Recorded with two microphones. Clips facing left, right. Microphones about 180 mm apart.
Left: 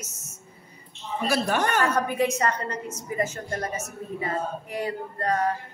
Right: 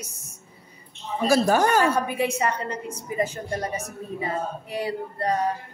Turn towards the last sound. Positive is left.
turn(degrees=-15)  # may be behind; listen again after turning